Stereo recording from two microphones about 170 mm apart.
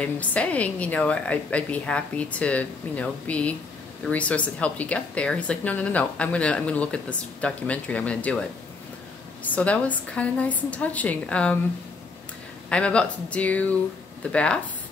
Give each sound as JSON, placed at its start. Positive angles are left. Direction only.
{"t": 0.0, "sound": "speech", "side_deg": 10}
{"t": 9.5, "sound": "speech", "side_deg": 10}
{"t": 12.6, "sound": "speech", "side_deg": 5}